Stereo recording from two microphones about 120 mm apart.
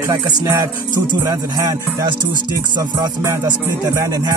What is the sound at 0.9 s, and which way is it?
Music, 35° right (ahead or behind).